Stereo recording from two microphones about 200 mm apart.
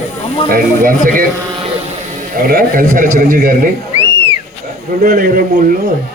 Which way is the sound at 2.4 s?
45° right (ahead or behind).